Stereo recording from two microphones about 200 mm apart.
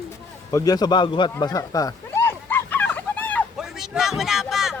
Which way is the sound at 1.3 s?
20° left (ahead or behind).